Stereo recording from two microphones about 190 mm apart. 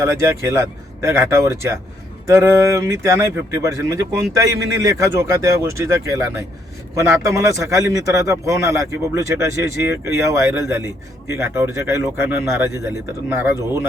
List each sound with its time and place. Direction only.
0.0 s speech: 15° right (ahead or behind)